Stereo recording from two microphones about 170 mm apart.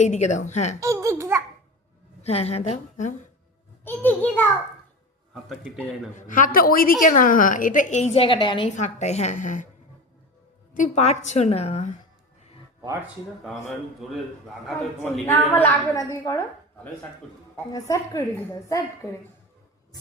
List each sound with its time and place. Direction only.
0.0 s a woman's voice: 45° left (ahead or behind)
0.8 s baby laughter: 15° right (ahead or behind)
2.2 s a woman's voice: 35° left (ahead or behind)
3.8 s a woman's voice: 10° left (ahead or behind)
6.1 s a woman's voice: 50° left (ahead or behind); by 8.7 s 30° left (ahead or behind)
8.7 s a woman's voice: 45° left (ahead or behind)
10.8 s a woman's voice: 45° left (ahead or behind)
12.8 s speech: 15° right (ahead or behind)
15.0 s a woman's voice: 10° left (ahead or behind)
17.7 s a woman's voice: 20° left (ahead or behind)